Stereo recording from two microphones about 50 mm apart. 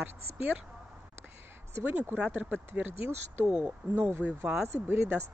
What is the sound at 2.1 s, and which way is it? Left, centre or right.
Speech, right.